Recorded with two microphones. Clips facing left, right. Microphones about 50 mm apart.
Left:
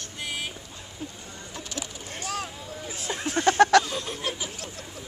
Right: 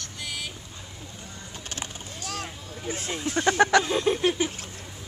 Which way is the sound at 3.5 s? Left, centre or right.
Centre.